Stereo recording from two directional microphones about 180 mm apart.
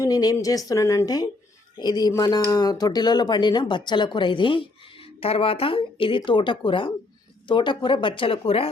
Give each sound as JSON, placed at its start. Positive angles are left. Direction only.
{"t": 0.0, "sound": "speech", "side_deg": 20}